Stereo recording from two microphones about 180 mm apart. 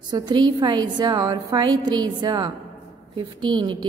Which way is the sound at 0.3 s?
25° right (ahead or behind).